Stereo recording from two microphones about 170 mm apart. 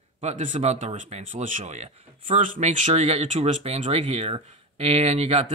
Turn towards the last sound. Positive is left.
turn(degrees=-40)  # may be behind; listen again after turning